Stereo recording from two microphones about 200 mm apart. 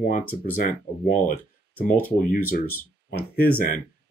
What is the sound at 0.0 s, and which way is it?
Speech, 45° left (ahead or behind).